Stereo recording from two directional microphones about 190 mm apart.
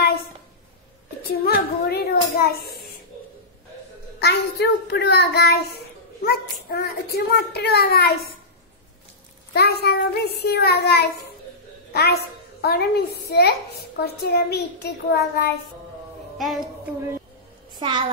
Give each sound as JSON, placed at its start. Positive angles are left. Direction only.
{"t": 1.3, "sound": "child singing", "side_deg": 55}
{"t": 4.2, "sound": "a woman's voice", "side_deg": 60}
{"t": 9.5, "sound": "a woman's voice", "side_deg": 60}
{"t": 16.3, "sound": "a woman's voice", "side_deg": 0}
{"t": 17.7, "sound": "a child's voice", "side_deg": -25}